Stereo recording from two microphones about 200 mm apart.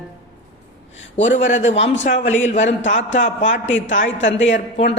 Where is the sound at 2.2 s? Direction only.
70° left (ahead or behind).